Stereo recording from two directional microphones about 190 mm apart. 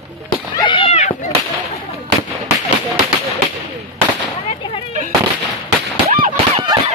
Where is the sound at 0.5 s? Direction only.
25° left (ahead or behind).